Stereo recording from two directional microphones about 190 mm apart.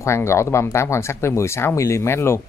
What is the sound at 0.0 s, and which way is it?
Speech, 15° left (ahead or behind).